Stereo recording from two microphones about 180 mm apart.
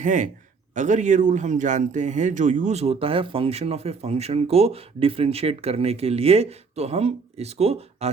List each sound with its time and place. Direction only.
0.0 s a man's voice: 45° right (ahead or behind)